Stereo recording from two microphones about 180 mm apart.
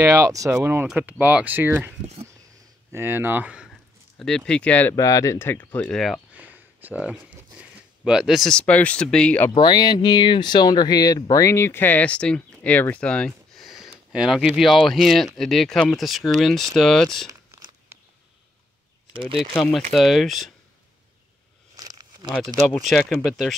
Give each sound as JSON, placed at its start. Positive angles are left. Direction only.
{"t": 0.0, "sound": "speech", "side_deg": -15}
{"t": 4.5, "sound": "speech", "side_deg": 5}
{"t": 9.5, "sound": "speech", "side_deg": 25}
{"t": 19.5, "sound": "speech", "side_deg": 0}
{"t": 21.7, "sound": "a sound", "side_deg": -20}
{"t": 22.8, "sound": "speech", "side_deg": 0}